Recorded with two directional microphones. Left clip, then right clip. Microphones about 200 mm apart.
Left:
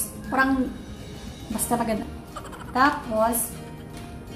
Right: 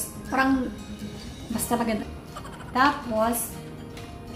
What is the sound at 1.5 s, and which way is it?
Speech, centre (ahead or behind).